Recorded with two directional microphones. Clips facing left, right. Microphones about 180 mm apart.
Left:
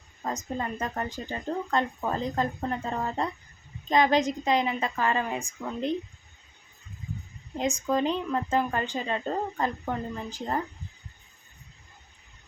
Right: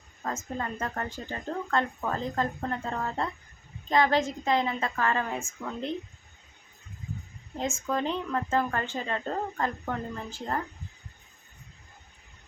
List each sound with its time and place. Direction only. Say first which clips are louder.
0.2 s speech: left 2 dB; 15° left (ahead or behind)
7.6 s speech: left 3 dB; 15° left (ahead or behind)